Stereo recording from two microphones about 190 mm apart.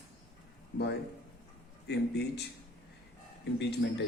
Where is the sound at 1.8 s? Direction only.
60° left (ahead or behind).